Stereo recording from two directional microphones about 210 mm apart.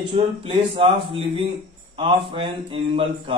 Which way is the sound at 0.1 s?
25° right (ahead or behind).